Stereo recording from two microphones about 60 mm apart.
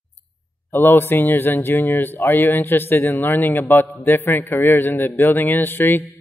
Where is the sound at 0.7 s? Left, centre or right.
Left.